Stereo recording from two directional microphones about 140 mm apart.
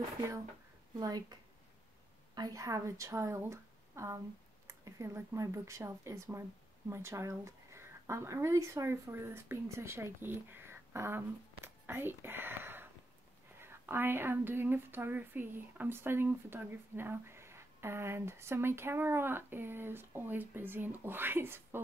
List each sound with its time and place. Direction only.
0.9 s a woman's voice: 30° right (ahead or behind)